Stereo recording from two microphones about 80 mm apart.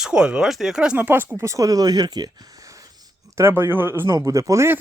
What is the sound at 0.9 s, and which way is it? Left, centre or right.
Speech, right.